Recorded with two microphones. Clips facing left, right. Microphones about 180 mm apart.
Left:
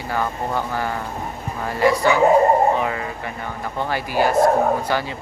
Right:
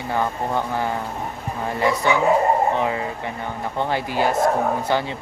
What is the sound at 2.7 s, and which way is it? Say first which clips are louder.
Speech: right 1 dB; 20° right (ahead or behind).